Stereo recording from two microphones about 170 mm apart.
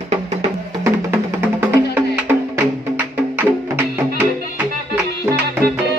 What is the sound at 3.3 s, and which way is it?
Music, 10° right (ahead or behind).